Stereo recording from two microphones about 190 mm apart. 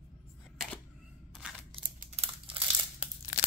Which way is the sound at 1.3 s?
Centre (ahead or behind).